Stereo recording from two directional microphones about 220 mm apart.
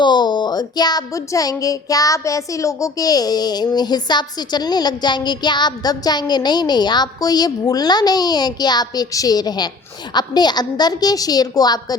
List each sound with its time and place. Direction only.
0.0 s a woman's voice: 20° left (ahead or behind)